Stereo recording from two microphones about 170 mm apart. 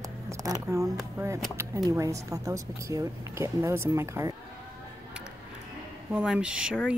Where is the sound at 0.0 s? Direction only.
20° right (ahead or behind).